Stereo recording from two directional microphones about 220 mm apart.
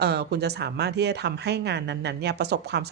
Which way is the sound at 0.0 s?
50° right (ahead or behind).